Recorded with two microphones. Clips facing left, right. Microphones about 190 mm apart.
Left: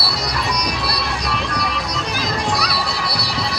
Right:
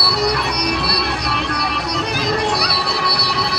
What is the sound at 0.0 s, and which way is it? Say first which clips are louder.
Music: right 5 dB; 60° right (ahead or behind).